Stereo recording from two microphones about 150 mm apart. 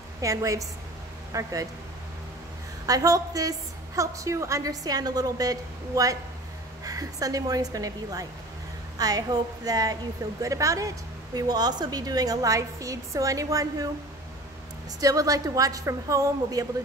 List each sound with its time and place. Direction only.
0.2 s speech: 20° right (ahead or behind)
2.9 s speech: 25° right (ahead or behind)
15.0 s speech: 25° right (ahead or behind)